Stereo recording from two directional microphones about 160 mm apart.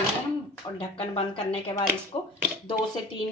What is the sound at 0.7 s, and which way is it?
A woman's voice, 35° left (ahead or behind).